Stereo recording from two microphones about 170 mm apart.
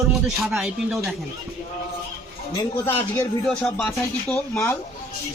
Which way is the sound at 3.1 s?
5° left (ahead or behind).